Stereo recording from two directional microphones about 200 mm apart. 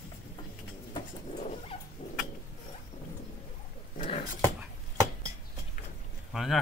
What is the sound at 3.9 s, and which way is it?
Dog, 30° left (ahead or behind).